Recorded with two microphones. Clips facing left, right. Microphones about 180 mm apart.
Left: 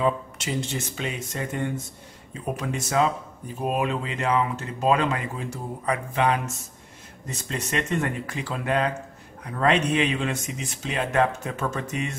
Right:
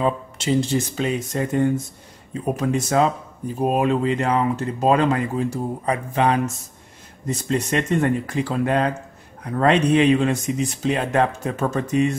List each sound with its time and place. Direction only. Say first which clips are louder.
0.0 s speech: right 2 dB; 30° right (ahead or behind)